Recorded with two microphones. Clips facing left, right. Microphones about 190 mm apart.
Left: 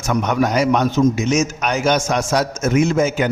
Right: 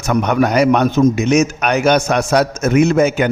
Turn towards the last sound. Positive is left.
turn(degrees=-65)  # may be behind; listen again after turning